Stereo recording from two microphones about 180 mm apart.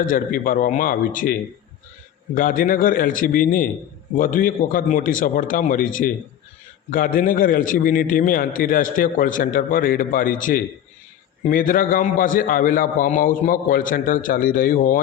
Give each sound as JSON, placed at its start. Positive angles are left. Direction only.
{"t": 0.0, "sound": "a man's voice", "side_deg": 50}